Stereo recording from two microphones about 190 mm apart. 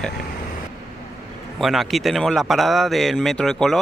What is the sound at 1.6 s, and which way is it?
A man's voice, centre (ahead or behind).